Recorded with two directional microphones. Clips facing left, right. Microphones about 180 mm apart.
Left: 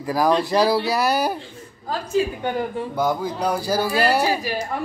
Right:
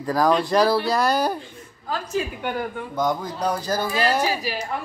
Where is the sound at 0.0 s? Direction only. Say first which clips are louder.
Even; 10° left (ahead or behind).